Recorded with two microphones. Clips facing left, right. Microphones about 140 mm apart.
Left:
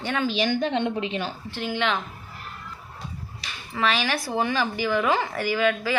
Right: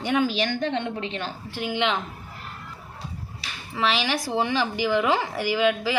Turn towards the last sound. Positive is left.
turn(degrees=-15)  # may be behind; listen again after turning